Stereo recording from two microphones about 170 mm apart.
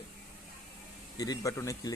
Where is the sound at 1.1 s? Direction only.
20° left (ahead or behind).